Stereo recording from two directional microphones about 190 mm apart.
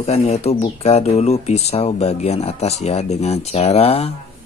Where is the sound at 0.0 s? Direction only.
35° left (ahead or behind).